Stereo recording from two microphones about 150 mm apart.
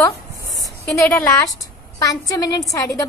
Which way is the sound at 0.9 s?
10° left (ahead or behind).